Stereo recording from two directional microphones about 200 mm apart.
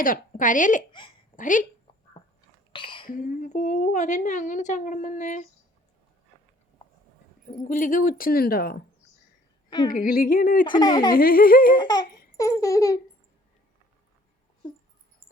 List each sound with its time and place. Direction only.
0.0 s a woman's voice: 45° left (ahead or behind)
0.9 s speech: 25° left (ahead or behind)
1.4 s a woman's voice: 40° left (ahead or behind)
2.7 s a sound: 25° left (ahead or behind)
3.1 s a woman's voice: 40° left (ahead or behind)
7.4 s speech: 40° left (ahead or behind)
9.6 s a woman's voice: 20° left (ahead or behind)
9.9 s speech: 45° left (ahead or behind)
10.7 s speech: 20° left (ahead or behind)
11.1 s speech: 45° left (ahead or behind)
11.8 s speech: 20° left (ahead or behind)
12.4 s baby laughter: 15° left (ahead or behind)